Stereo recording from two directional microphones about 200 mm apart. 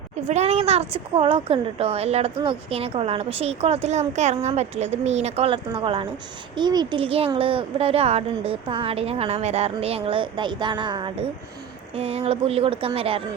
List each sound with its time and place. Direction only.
0.3 s a woman's voice: 30° right (ahead or behind)